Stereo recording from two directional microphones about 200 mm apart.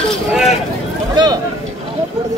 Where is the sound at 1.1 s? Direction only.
20° right (ahead or behind).